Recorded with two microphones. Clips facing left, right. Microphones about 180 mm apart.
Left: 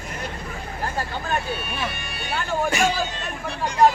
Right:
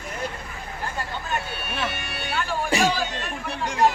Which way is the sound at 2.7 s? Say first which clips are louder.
Right 1 dB; 35° right (ahead or behind).